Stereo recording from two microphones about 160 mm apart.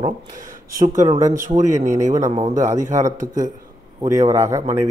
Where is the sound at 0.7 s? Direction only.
55° right (ahead or behind).